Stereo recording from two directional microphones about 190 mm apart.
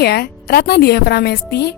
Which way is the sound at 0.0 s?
55° left (ahead or behind).